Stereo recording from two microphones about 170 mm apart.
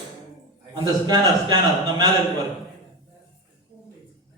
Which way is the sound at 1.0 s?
25° right (ahead or behind).